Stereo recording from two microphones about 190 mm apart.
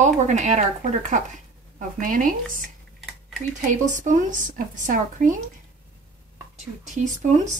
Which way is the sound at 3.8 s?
40° right (ahead or behind).